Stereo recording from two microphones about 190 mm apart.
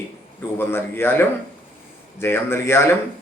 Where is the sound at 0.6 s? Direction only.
10° left (ahead or behind).